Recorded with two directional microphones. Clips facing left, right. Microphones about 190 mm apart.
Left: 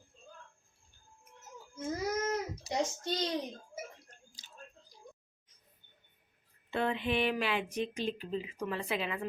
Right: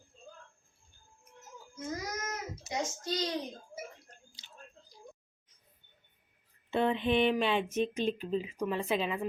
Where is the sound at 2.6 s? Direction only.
35° left (ahead or behind).